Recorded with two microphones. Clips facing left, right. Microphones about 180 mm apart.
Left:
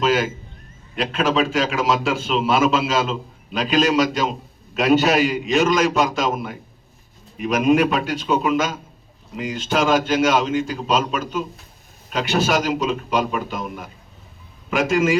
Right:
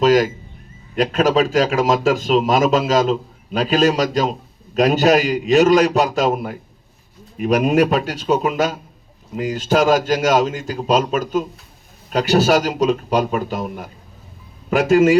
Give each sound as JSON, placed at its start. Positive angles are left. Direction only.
{"t": 0.0, "sound": "music", "side_deg": -40}
{"t": 0.9, "sound": "a man's voice", "side_deg": -40}